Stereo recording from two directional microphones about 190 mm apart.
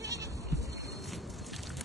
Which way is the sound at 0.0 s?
15° right (ahead or behind).